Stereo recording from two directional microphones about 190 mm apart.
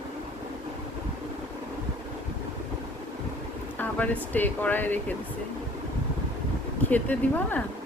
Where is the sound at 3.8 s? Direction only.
5° left (ahead or behind).